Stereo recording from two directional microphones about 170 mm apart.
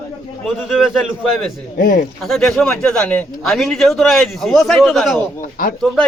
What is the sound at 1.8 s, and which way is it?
Speech, 55° left (ahead or behind).